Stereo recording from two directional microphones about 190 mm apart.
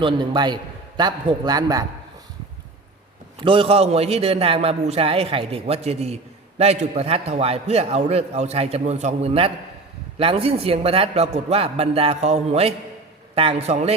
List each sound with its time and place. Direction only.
0.0 s a man's voice: 25° right (ahead or behind)
3.4 s a man's voice: 30° right (ahead or behind)